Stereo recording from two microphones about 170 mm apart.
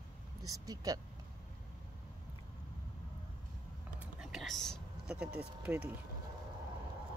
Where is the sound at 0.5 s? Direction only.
20° right (ahead or behind).